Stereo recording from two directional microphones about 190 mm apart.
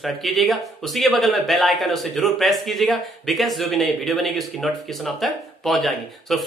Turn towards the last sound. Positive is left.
turn(degrees=0)  # may be behind; listen again after turning